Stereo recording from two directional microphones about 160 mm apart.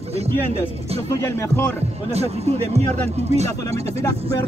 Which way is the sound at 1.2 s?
15° left (ahead or behind).